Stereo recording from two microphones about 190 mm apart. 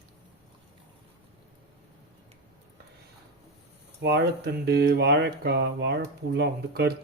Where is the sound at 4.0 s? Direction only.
60° right (ahead or behind).